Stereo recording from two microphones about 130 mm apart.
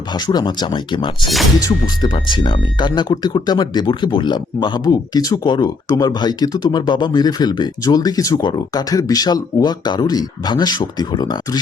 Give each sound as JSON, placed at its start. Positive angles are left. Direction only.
{"t": 0.1, "sound": "speech", "side_deg": 35}